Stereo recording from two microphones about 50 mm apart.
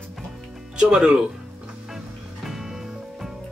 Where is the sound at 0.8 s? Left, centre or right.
Centre.